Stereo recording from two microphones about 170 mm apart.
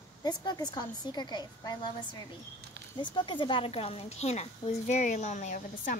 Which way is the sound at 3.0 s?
30° left (ahead or behind).